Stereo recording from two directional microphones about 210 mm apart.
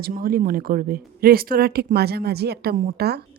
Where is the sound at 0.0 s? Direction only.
45° right (ahead or behind).